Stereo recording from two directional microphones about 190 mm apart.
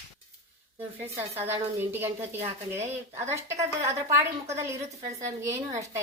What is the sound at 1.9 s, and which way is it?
A child's voice, 10° right (ahead or behind).